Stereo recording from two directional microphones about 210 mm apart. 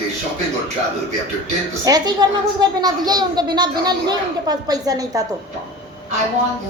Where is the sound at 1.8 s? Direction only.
20° right (ahead or behind).